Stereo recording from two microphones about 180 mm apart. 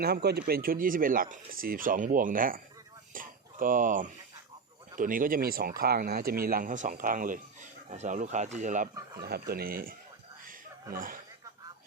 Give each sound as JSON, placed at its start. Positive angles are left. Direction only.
{"t": 0.0, "sound": "speech", "side_deg": -60}
{"t": 9.2, "sound": "speech", "side_deg": -60}
{"t": 10.9, "sound": "speech", "side_deg": -50}